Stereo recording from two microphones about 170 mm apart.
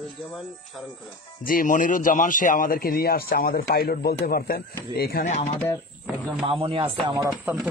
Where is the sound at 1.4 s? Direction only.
50° left (ahead or behind).